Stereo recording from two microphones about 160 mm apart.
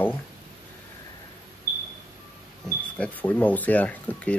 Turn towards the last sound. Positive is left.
turn(degrees=10)  # may be behind; listen again after turning